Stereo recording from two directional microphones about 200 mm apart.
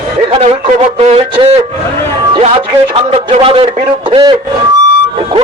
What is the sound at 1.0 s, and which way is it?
Speech, 30° right (ahead or behind).